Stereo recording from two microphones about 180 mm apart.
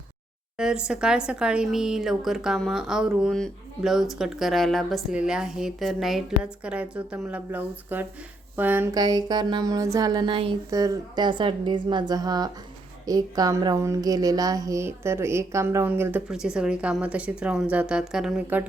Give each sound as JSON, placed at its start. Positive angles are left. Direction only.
{"t": 0.5, "sound": "a woman's voice", "side_deg": -5}
{"t": 9.0, "sound": "a woman's voice", "side_deg": -25}